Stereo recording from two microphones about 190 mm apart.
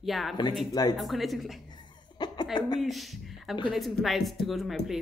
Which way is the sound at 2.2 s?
20° left (ahead or behind).